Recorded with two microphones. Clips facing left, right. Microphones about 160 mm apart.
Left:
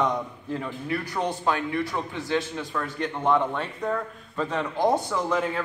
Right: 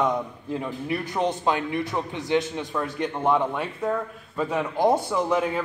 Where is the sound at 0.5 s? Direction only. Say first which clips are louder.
Right 2 dB; 15° right (ahead or behind).